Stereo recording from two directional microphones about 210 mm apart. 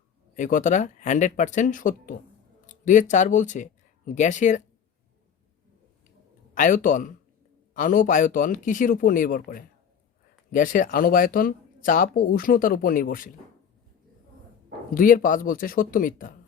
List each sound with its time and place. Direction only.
0.3 s speech: 35° left (ahead or behind)
6.5 s a man's voice: 40° left (ahead or behind)
14.9 s speech: 40° left (ahead or behind)